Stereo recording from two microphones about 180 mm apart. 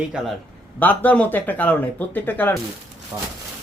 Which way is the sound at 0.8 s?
10° left (ahead or behind).